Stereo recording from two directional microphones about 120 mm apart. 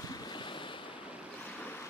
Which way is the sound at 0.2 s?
40° left (ahead or behind).